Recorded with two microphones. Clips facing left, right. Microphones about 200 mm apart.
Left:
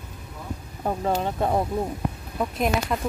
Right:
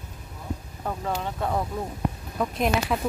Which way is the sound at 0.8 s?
30° left (ahead or behind).